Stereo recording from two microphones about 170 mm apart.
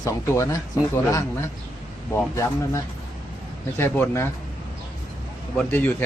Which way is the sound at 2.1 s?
15° left (ahead or behind).